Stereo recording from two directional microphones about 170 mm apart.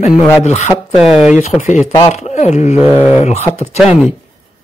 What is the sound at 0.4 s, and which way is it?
Speech, 40° left (ahead or behind).